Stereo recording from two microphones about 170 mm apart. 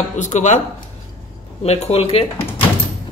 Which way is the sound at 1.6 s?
40° left (ahead or behind).